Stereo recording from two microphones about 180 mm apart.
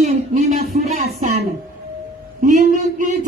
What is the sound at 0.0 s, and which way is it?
Music, 40° right (ahead or behind).